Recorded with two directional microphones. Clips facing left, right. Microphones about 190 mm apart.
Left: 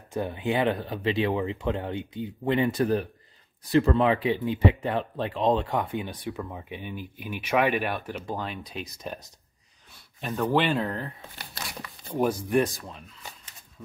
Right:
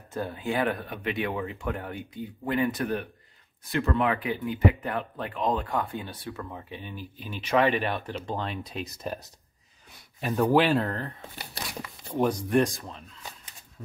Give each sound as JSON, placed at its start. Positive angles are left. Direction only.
{"t": 0.1, "sound": "speech", "side_deg": 20}
{"t": 10.2, "sound": "speech", "side_deg": -5}